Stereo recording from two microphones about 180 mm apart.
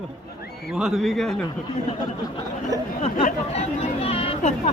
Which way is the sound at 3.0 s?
40° left (ahead or behind).